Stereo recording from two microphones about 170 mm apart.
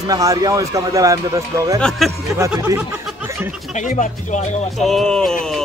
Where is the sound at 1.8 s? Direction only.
5° left (ahead or behind).